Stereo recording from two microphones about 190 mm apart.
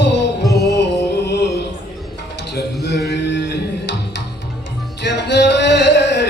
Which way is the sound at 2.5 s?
65° left (ahead or behind).